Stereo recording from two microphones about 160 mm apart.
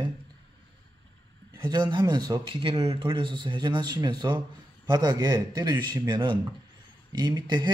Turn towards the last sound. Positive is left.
turn(degrees=-30)  # may be behind; listen again after turning